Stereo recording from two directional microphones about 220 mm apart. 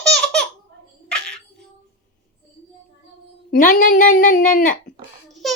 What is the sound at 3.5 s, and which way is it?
Speech, 40° left (ahead or behind).